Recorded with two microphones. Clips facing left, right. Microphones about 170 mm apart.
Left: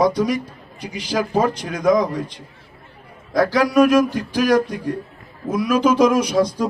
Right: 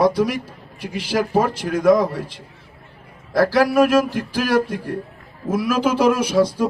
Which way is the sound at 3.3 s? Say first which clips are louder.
Right 1 dB; 5° right (ahead or behind).